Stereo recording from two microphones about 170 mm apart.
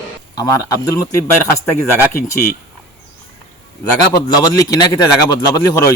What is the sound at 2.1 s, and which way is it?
Speech, 60° left (ahead or behind).